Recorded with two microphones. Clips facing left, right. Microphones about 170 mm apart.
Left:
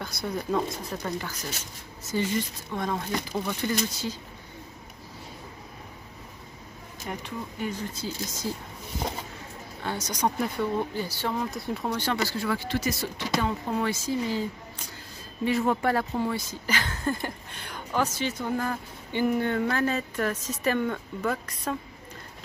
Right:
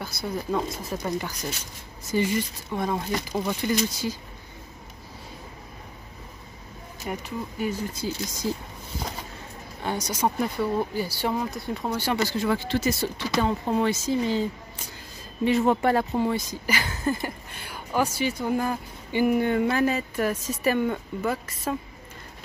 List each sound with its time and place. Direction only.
0.0 s speech: 5° right (ahead or behind)
2.1 s speech: 15° right (ahead or behind)
7.1 s speech: 5° right (ahead or behind)
9.8 s speech: 10° right (ahead or behind)
11.5 s speech: centre (ahead or behind)
12.0 s speech: 15° right (ahead or behind)
15.4 s speech: 20° right (ahead or behind); by 21.7 s 5° right (ahead or behind)